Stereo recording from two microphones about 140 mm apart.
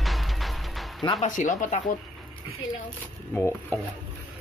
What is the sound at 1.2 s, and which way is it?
Speech, 60° left (ahead or behind).